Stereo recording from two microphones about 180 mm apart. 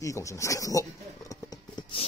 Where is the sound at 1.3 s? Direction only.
20° left (ahead or behind).